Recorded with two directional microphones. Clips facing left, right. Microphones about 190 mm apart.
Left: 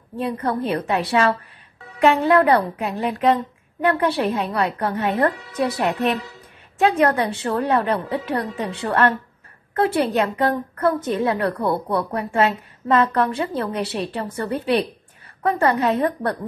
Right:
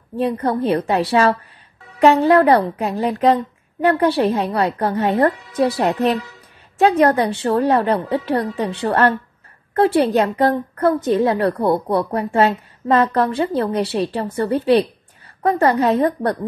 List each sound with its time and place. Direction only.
0.2 s a woman's voice: 35° right (ahead or behind)